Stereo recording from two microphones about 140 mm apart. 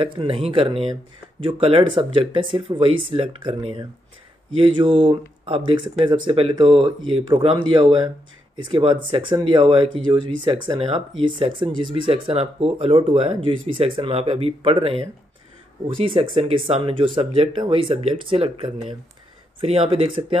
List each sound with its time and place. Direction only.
0.0 s speech: 35° right (ahead or behind)